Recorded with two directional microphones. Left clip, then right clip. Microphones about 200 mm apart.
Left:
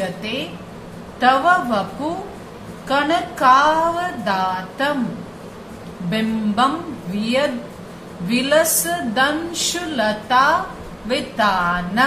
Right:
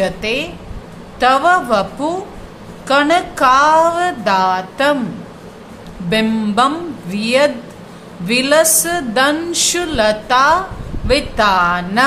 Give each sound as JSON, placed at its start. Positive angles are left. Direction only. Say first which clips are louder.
{"t": 0.0, "sound": "a woman's voice", "louder": "right 7 dB", "side_deg": -50}
{"t": 2.9, "sound": "a woman's voice", "louder": "right 6 dB", "side_deg": -50}
{"t": 6.0, "sound": "a woman's voice", "louder": "right 6 dB", "side_deg": -50}